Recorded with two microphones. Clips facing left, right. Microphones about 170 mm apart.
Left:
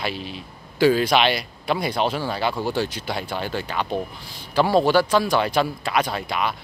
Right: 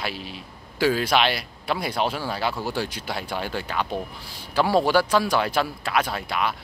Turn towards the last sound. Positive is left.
turn(degrees=-5)  # may be behind; listen again after turning